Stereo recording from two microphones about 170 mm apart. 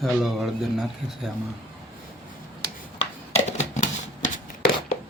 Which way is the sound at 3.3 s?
40° left (ahead or behind).